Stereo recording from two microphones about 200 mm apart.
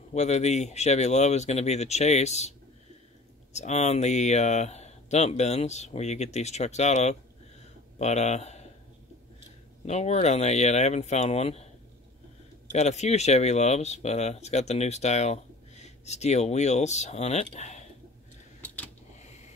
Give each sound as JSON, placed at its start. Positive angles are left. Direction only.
{"t": 0.1, "sound": "speech", "side_deg": 35}
{"t": 3.5, "sound": "speech", "side_deg": 35}
{"t": 9.8, "sound": "speech", "side_deg": 35}
{"t": 12.7, "sound": "speech", "side_deg": 35}
{"t": 19.1, "sound": "a sound", "side_deg": 35}